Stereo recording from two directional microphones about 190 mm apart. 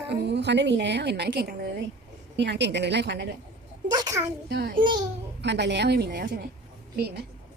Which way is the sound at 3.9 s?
20° right (ahead or behind).